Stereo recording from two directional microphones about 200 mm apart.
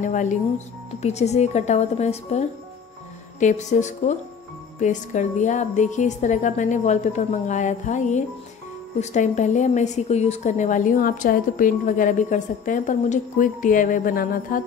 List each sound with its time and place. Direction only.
0.0 s speech: 40° left (ahead or behind)